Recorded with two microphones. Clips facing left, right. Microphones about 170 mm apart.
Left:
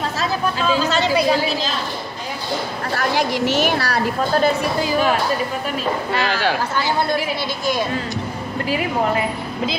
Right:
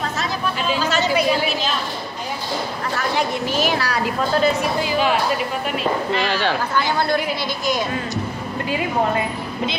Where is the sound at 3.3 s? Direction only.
80° left; by 3.9 s 65° left (ahead or behind).